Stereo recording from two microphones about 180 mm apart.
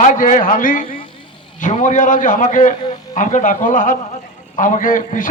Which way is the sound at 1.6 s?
45° left (ahead or behind).